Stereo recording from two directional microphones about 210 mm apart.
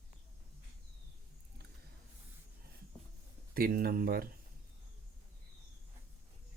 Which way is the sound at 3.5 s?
45° right (ahead or behind).